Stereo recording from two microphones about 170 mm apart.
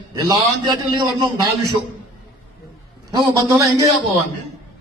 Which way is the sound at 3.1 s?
25° right (ahead or behind).